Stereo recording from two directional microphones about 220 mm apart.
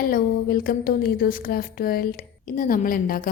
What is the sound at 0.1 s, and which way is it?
A woman's voice, 40° left (ahead or behind).